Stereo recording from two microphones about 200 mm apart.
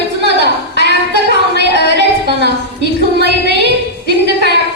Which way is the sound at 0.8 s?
55° right (ahead or behind).